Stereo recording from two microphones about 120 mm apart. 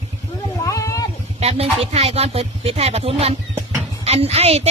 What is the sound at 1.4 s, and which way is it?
A woman's voice, 60° right (ahead or behind).